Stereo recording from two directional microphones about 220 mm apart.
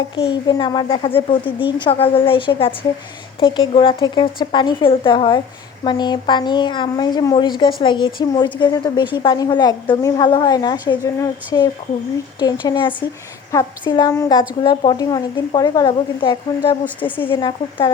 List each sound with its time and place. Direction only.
0.2 s a woman's voice: 20° left (ahead or behind)